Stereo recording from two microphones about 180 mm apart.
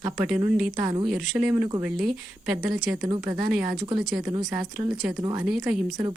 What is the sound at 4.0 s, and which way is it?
Speech, 5° right (ahead or behind).